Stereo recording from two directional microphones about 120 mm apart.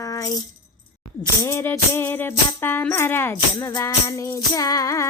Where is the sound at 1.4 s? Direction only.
20° left (ahead or behind).